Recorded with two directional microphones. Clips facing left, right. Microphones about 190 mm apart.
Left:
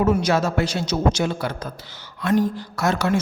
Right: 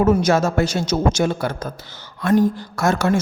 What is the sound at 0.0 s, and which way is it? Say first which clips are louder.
A woman's voice: right 3 dB; 45° right (ahead or behind).